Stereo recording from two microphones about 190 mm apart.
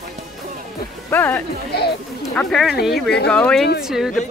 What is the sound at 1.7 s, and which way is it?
Speech, 55° left (ahead or behind).